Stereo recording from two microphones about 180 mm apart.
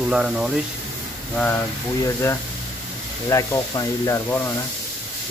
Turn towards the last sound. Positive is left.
turn(degrees=10)  # may be behind; listen again after turning